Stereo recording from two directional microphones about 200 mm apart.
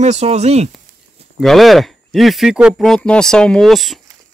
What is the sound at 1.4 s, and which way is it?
Speech, centre (ahead or behind).